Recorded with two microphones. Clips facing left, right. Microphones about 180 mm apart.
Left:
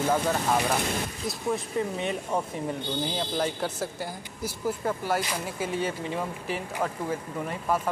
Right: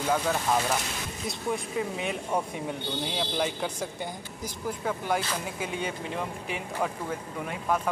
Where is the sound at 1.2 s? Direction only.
Centre (ahead or behind).